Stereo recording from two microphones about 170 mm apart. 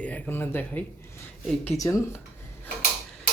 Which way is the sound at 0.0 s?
10° left (ahead or behind).